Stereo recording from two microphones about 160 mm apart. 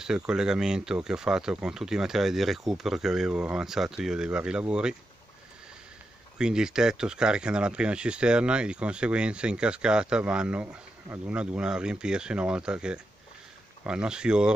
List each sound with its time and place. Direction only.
0.0 s speech: 5° right (ahead or behind)
6.3 s speech: 5° right (ahead or behind)